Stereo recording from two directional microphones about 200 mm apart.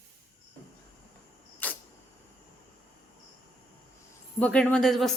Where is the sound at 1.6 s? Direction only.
10° left (ahead or behind).